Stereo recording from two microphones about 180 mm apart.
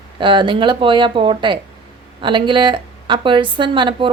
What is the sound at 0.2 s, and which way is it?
A woman's voice, 25° right (ahead or behind).